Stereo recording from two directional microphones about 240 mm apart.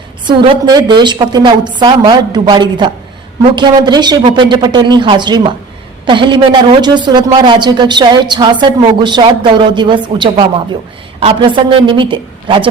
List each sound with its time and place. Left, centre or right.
0.3 s a woman's voice: centre